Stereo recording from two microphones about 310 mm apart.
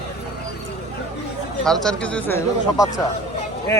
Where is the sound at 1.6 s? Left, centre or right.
Centre.